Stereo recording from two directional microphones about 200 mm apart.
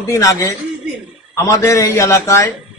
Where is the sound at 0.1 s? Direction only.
15° left (ahead or behind).